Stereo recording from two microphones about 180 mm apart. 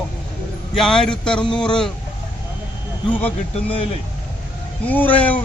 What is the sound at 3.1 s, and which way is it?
Speech, 10° left (ahead or behind).